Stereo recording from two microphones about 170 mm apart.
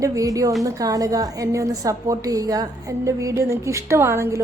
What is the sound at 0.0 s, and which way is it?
A woman's voice, 20° right (ahead or behind).